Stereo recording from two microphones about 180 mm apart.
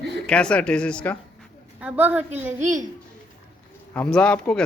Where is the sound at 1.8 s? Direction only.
5° right (ahead or behind).